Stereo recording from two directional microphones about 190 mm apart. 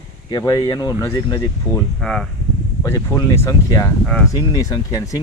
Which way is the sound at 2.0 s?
Centre (ahead or behind).